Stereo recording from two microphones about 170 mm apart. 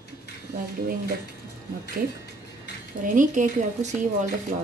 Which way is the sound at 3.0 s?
50° right (ahead or behind).